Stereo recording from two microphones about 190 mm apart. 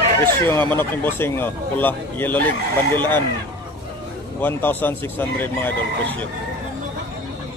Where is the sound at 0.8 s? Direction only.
10° left (ahead or behind).